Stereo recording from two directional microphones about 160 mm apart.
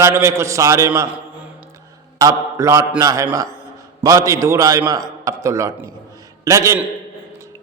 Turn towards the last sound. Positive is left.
turn(degrees=-20)  # may be behind; listen again after turning